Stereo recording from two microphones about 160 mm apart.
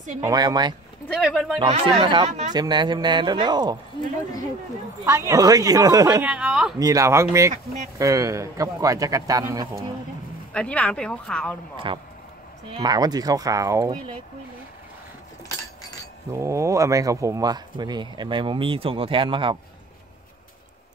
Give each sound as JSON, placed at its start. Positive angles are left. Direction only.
{"t": 0.2, "sound": "speech", "side_deg": -25}
{"t": 1.0, "sound": "speech", "side_deg": 0}
{"t": 1.6, "sound": "speech", "side_deg": -35}
{"t": 5.0, "sound": "speech", "side_deg": -20}
{"t": 6.2, "sound": "speech", "side_deg": -5}
{"t": 6.8, "sound": "speech", "side_deg": -20}
{"t": 10.5, "sound": "speech", "side_deg": 5}
{"t": 11.7, "sound": "speech", "side_deg": -30}
{"t": 16.3, "sound": "speech", "side_deg": -20}